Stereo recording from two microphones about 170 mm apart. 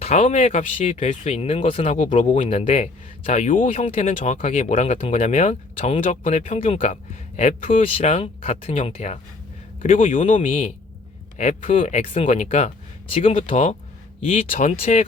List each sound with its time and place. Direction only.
0.0 s speech: 40° left (ahead or behind)